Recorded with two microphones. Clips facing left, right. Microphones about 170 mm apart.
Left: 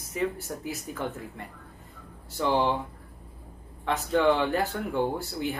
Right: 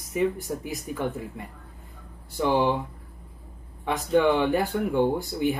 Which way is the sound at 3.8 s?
15° right (ahead or behind).